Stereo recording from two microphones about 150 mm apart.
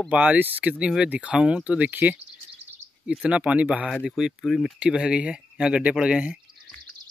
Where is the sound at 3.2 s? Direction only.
10° right (ahead or behind).